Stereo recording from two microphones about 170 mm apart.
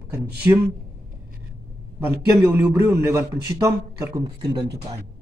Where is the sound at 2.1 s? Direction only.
15° right (ahead or behind).